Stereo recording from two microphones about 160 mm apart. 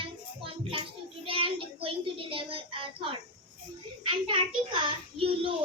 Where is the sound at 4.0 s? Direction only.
35° right (ahead or behind).